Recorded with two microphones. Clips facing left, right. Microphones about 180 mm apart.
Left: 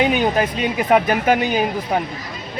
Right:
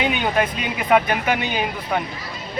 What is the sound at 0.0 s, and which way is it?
Speech, 40° left (ahead or behind).